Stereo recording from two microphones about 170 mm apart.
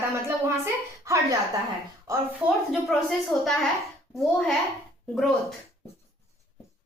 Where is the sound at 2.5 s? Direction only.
Centre (ahead or behind).